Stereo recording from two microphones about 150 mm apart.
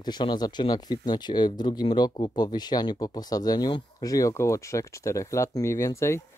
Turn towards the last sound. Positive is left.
turn(degrees=20)  # may be behind; listen again after turning